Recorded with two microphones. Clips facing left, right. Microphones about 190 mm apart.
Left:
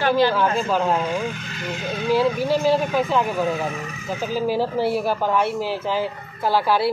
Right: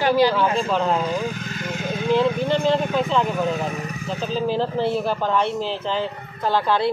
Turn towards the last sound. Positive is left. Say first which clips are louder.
# left 1 dB
turn(degrees=10)  # may be behind; listen again after turning